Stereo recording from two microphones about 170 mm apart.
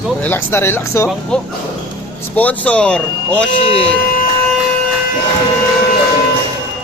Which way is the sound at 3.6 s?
35° left (ahead or behind).